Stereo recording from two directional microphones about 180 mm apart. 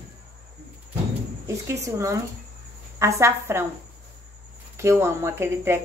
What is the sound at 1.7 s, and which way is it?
A woman's voice, 15° right (ahead or behind).